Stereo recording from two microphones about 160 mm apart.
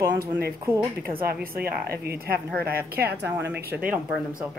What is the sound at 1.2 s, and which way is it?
A woman's voice, 70° right (ahead or behind).